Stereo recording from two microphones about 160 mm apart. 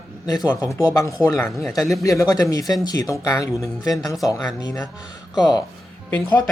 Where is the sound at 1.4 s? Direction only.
5° left (ahead or behind).